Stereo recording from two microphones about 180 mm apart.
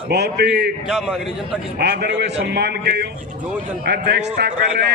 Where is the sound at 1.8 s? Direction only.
65° right (ahead or behind).